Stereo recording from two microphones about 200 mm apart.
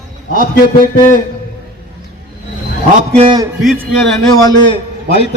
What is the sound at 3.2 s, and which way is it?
Speech, 25° right (ahead or behind).